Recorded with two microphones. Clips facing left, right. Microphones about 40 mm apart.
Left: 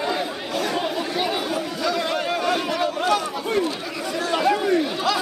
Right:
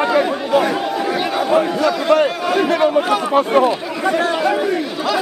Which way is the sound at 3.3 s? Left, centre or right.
Right.